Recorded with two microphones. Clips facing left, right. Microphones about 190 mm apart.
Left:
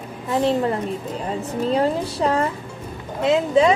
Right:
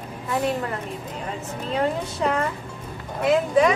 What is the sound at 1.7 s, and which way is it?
A woman's voice, 35° left (ahead or behind).